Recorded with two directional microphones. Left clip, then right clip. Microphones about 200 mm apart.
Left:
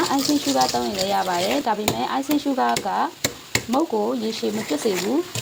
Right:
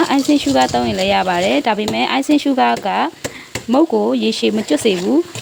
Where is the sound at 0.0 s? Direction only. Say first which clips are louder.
Right 6 dB; 40° right (ahead or behind).